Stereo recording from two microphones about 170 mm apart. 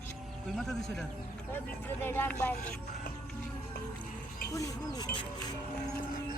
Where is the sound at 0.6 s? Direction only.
Centre (ahead or behind).